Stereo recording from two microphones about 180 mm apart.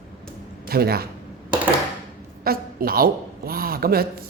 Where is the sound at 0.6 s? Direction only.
60° right (ahead or behind).